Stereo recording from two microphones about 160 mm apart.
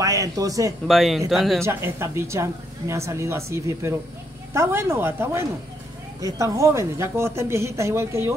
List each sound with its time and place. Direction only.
0.0 s speech: 20° right (ahead or behind)
0.8 s speech: centre (ahead or behind)
1.6 s speech: 15° right (ahead or behind)